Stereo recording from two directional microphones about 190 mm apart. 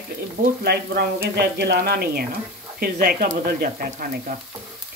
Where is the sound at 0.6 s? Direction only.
55° right (ahead or behind).